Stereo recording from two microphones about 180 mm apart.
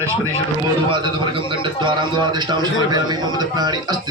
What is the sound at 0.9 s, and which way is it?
A man's voice, 25° right (ahead or behind).